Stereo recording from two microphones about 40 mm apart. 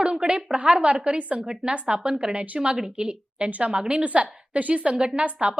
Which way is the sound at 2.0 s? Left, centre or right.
Centre.